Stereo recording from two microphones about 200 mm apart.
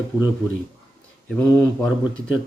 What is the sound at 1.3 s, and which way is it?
Speech, 5° left (ahead or behind).